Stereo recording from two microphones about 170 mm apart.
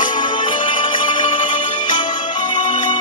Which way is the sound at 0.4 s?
30° left (ahead or behind).